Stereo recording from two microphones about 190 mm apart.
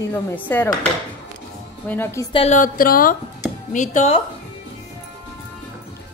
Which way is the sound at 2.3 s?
35° left (ahead or behind).